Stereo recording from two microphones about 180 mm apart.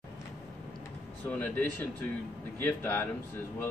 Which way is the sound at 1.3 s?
10° left (ahead or behind).